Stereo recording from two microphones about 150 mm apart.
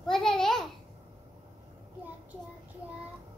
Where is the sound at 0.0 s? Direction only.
5° left (ahead or behind).